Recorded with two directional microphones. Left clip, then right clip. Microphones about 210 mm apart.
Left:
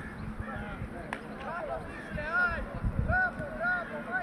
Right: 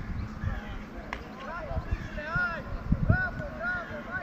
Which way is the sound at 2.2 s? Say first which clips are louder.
Left 1 dB; 50° left (ahead or behind).